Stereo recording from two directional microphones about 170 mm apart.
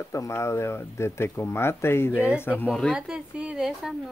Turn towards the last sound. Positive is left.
turn(degrees=0)  # may be behind; listen again after turning